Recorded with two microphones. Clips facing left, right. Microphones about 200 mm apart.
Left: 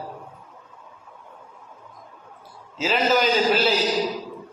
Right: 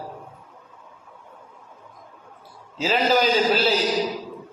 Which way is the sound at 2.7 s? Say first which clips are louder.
Right 1 dB; 40° right (ahead or behind).